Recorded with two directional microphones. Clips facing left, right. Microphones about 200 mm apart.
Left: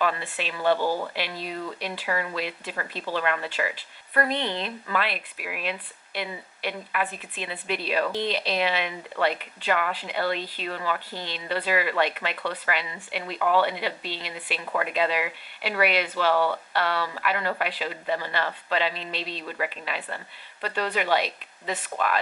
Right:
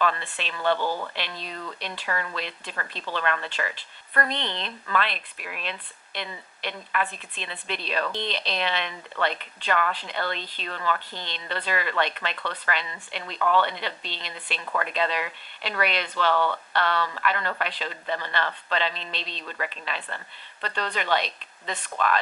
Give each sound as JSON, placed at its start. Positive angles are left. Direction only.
{"t": 0.0, "sound": "speech", "side_deg": 10}
{"t": 0.7, "sound": "speech", "side_deg": 35}
{"t": 1.1, "sound": "speech", "side_deg": 10}